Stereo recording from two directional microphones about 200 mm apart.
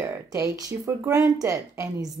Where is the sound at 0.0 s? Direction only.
15° right (ahead or behind).